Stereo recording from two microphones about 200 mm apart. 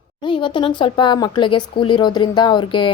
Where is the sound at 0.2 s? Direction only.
25° left (ahead or behind).